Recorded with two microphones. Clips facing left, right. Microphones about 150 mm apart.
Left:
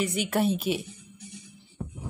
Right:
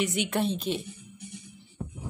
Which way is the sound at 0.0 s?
Centre (ahead or behind).